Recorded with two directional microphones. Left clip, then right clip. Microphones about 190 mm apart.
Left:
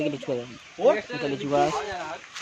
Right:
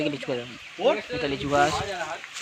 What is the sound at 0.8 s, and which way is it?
Speech, 55° left (ahead or behind).